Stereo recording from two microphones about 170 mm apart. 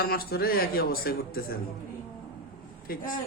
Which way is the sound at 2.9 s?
60° left (ahead or behind).